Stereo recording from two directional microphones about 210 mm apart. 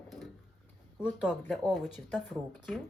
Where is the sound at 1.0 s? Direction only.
Centre (ahead or behind).